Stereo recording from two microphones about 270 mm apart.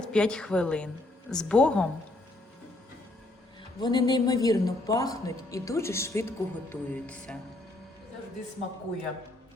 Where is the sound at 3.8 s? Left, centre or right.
Centre.